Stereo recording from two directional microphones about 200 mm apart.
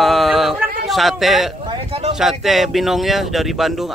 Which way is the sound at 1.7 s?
25° right (ahead or behind).